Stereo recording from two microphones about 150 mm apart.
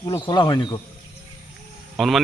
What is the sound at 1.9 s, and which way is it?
Speech, centre (ahead or behind).